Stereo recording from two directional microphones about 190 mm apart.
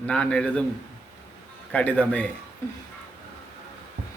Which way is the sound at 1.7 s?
5° left (ahead or behind).